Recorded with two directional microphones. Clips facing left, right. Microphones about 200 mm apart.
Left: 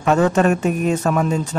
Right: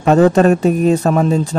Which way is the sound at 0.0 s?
35° right (ahead or behind).